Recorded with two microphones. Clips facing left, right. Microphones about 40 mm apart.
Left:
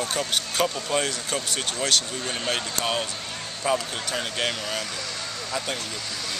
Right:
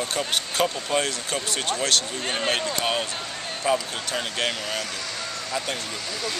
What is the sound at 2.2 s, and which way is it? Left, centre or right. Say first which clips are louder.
Speech: right 3 dB; right.